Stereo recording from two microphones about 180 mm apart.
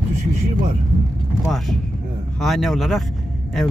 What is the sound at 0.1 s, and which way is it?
Vehicle, 40° right (ahead or behind).